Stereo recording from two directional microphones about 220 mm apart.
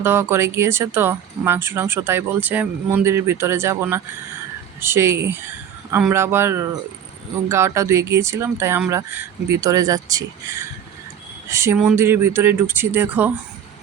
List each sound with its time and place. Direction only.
0.0 s speech: 10° right (ahead or behind)
11.4 s speech: 15° right (ahead or behind)